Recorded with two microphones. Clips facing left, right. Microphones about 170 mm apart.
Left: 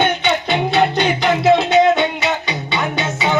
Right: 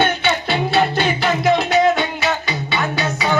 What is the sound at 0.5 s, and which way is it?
Music, 20° left (ahead or behind).